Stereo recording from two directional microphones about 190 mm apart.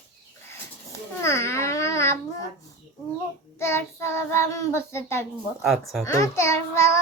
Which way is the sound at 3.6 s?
15° left (ahead or behind).